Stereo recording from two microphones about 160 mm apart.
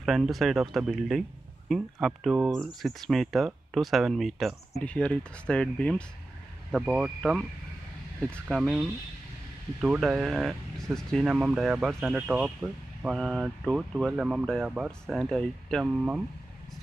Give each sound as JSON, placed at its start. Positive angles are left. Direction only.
{"t": 0.0, "sound": "speech", "side_deg": 0}
{"t": 6.7, "sound": "speech", "side_deg": -5}